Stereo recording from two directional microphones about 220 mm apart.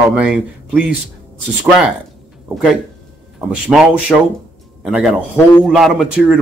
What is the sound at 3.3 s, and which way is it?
Speech, 5° right (ahead or behind).